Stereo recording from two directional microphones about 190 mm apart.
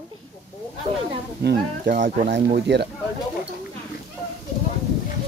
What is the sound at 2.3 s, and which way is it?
Speech, 60° right (ahead or behind).